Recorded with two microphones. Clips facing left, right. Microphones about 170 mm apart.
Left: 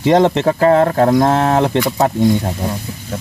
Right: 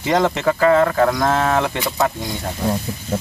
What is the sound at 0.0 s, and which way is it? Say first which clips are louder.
Speech: left 5 dB; 30° left (ahead or behind).